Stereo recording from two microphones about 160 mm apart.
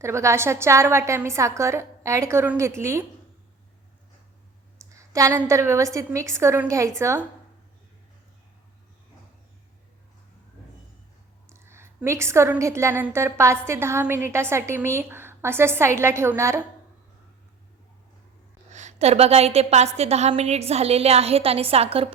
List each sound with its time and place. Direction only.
0.0 s a woman's voice: 15° right (ahead or behind)
4.9 s a sound: 20° right (ahead or behind)
5.4 s a woman's voice: 15° right (ahead or behind)
11.4 s a woman's voice: 15° right (ahead or behind)
18.7 s a woman's voice: 45° right (ahead or behind)